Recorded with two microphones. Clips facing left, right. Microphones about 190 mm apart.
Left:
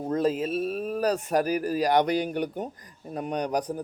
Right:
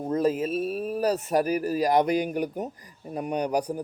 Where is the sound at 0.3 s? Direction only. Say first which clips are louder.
Right 1 dB; 40° right (ahead or behind).